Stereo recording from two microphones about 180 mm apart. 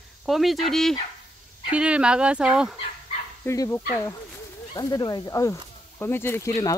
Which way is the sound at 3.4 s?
15° left (ahead or behind).